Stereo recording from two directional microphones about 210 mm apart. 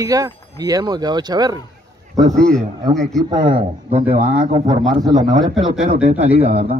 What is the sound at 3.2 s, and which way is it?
Speech, 20° right (ahead or behind).